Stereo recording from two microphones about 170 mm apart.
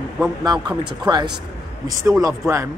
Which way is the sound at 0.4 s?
25° right (ahead or behind).